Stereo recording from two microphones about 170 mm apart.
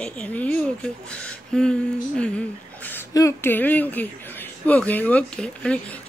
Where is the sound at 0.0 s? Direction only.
5° left (ahead or behind).